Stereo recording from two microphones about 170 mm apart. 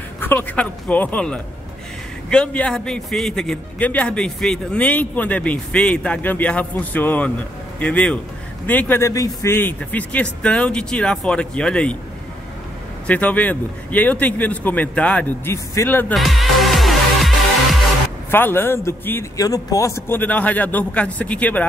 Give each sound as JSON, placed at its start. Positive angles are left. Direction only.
{"t": 0.2, "sound": "a man's voice", "side_deg": 10}
{"t": 13.0, "sound": "a man's voice", "side_deg": 10}
{"t": 16.2, "sound": "music", "side_deg": 0}
{"t": 18.3, "sound": "a man's voice", "side_deg": 15}
{"t": 20.1, "sound": "a man's voice", "side_deg": 10}